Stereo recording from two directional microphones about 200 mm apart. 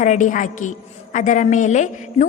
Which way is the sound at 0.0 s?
40° left (ahead or behind).